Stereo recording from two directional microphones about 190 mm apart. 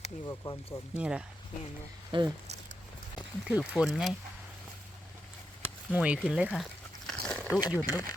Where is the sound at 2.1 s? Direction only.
25° right (ahead or behind).